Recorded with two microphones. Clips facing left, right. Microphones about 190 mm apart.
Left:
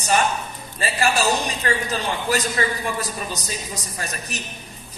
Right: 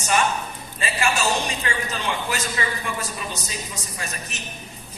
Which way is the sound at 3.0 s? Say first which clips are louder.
Left 2 dB; 35° left (ahead or behind).